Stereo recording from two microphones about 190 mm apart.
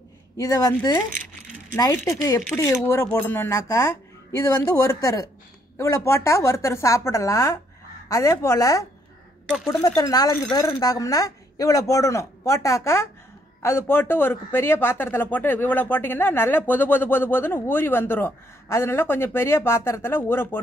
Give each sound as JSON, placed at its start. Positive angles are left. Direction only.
{"t": 0.4, "sound": "speech", "side_deg": 20}